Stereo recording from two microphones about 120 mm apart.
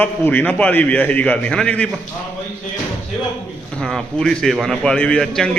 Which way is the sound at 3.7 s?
5° left (ahead or behind).